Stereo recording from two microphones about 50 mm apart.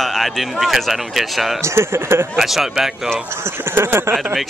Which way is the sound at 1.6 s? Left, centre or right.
Right.